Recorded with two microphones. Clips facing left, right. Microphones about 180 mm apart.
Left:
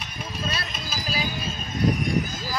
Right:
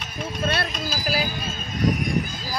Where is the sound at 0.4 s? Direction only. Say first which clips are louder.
Right 7 dB; 65° right (ahead or behind).